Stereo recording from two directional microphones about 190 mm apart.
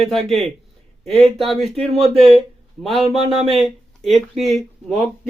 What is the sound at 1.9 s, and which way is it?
Speech, 30° right (ahead or behind).